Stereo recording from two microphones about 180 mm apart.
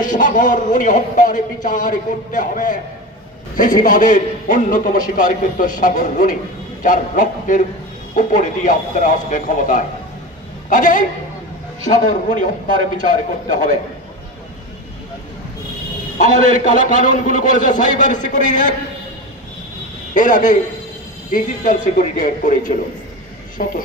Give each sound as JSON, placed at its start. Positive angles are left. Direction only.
{"t": 0.0, "sound": "a man's voice", "side_deg": 45}
{"t": 16.2, "sound": "a man's voice", "side_deg": 45}
{"t": 20.2, "sound": "a man's voice", "side_deg": 45}